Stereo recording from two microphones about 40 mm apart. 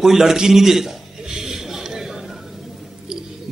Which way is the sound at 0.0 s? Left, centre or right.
Centre.